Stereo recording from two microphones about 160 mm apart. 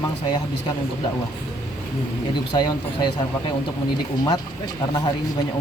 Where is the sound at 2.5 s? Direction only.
25° left (ahead or behind).